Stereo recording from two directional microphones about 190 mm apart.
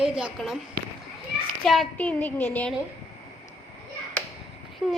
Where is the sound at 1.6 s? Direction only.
5° left (ahead or behind).